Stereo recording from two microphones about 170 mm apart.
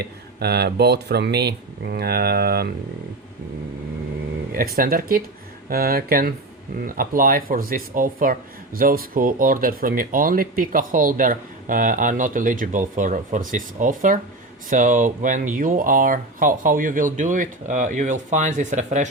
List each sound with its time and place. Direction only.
0.0 s speech: 70° right (ahead or behind)
4.5 s speech: 60° right (ahead or behind)